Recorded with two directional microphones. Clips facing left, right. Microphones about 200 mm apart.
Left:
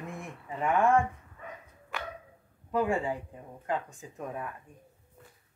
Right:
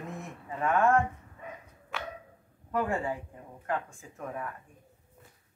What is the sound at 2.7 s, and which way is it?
A man's voice, 15° left (ahead or behind).